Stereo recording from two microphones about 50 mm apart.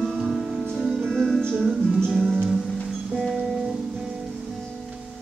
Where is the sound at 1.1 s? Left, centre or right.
Centre.